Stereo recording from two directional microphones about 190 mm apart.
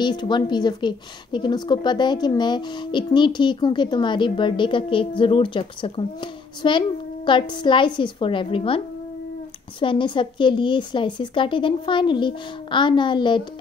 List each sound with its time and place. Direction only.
0.0 s a woman's voice: 25° left (ahead or behind)